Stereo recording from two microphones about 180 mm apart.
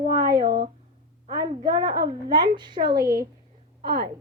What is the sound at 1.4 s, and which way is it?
Speech, 20° right (ahead or behind).